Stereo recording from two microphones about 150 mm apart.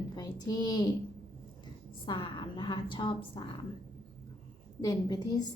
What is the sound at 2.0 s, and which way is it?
A woman's voice, 35° left (ahead or behind).